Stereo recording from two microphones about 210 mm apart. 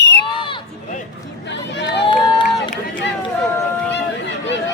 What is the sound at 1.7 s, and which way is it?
Run, 55° left (ahead or behind).